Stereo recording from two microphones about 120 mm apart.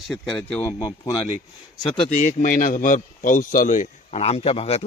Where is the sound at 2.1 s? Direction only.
90° left.